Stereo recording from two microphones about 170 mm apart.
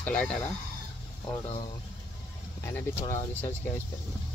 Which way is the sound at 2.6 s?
15° left (ahead or behind).